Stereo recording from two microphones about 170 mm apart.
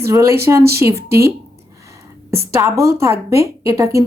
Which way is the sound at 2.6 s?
15° right (ahead or behind).